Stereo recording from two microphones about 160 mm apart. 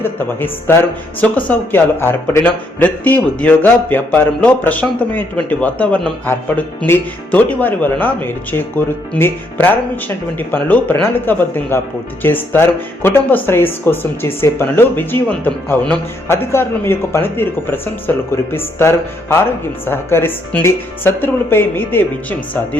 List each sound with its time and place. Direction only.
0.0 s speech: 15° left (ahead or behind)